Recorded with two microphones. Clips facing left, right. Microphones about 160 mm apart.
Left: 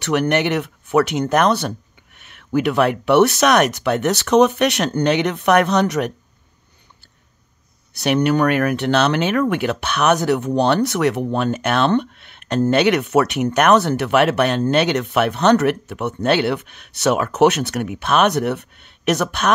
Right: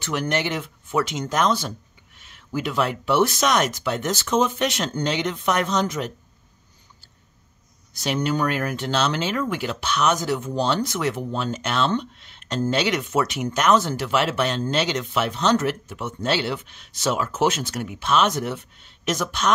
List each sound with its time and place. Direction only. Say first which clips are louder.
0.0 s speech: left 7 dB; 65° left (ahead or behind)
7.9 s speech: left 7 dB; 65° left (ahead or behind)